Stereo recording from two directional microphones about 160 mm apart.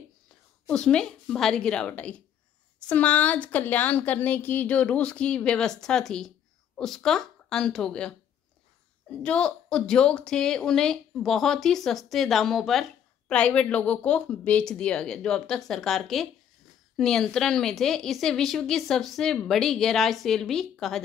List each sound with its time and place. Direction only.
0.7 s a woman's voice: 5° left (ahead or behind)